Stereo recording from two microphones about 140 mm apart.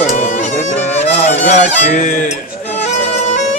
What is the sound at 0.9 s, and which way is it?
Music, 50° left (ahead or behind).